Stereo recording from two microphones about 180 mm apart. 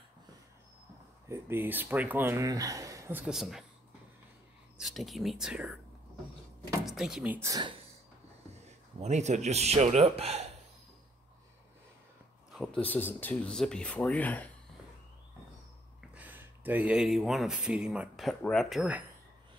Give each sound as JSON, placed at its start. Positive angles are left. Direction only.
{"t": 1.3, "sound": "speech", "side_deg": -10}
{"t": 4.7, "sound": "speech", "side_deg": 0}
{"t": 6.9, "sound": "speech", "side_deg": 0}
{"t": 7.3, "sound": "speech", "side_deg": -20}
{"t": 8.5, "sound": "speech", "side_deg": -40}
{"t": 12.5, "sound": "speech", "side_deg": 5}
{"t": 16.0, "sound": "speech", "side_deg": -10}